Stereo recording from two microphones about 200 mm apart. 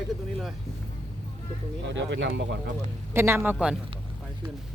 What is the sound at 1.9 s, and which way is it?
Speech, 65° right (ahead or behind).